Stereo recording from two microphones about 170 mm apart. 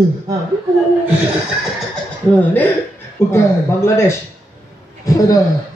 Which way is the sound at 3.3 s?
15° left (ahead or behind).